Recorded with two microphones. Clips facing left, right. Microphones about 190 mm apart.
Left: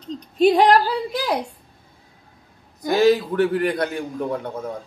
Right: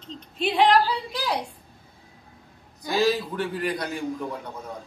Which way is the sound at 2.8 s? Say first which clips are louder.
Left 7 dB; 60° left (ahead or behind).